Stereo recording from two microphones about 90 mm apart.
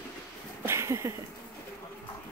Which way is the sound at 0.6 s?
30° right (ahead or behind).